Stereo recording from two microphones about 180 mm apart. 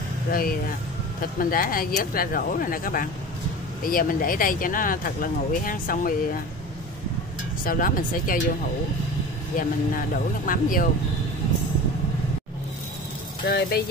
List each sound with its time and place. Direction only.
0.3 s speech: 55° left (ahead or behind)
7.6 s speech: 50° left (ahead or behind)
9.6 s speech: 50° left (ahead or behind)
13.5 s speech: 60° left (ahead or behind)